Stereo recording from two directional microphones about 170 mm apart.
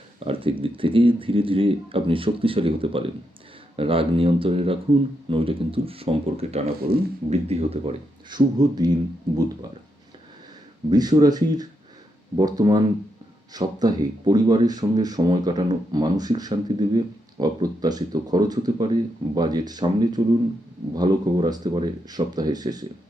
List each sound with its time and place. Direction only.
0.3 s speech: 30° right (ahead or behind)
8.5 s speech: 25° right (ahead or behind)
10.8 s speech: 25° right (ahead or behind)